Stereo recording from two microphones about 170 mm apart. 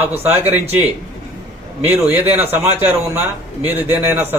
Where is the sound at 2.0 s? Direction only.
10° right (ahead or behind).